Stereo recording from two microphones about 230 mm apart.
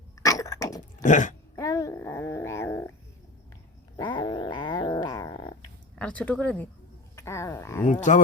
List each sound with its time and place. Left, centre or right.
0.2 s a sound: centre
1.0 s speech: left
1.5 s dog: centre
3.9 s growling: centre
6.0 s speech: centre
7.2 s a sound: centre